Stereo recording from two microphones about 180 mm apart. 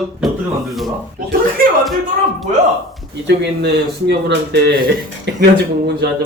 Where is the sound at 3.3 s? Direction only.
70° right (ahead or behind).